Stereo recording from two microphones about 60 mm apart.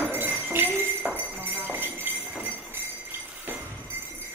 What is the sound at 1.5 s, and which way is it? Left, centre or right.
Jingle bell, right.